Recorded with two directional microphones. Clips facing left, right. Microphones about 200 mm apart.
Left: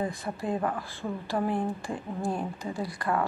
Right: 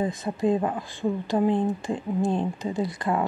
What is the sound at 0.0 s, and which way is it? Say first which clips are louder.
Speech: right 7 dB; 20° right (ahead or behind).